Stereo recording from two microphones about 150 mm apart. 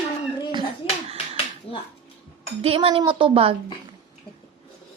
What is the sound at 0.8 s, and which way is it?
Finger snapping, 35° left (ahead or behind).